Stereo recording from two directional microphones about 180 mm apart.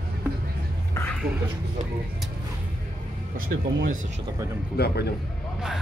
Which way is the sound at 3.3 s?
50° right (ahead or behind).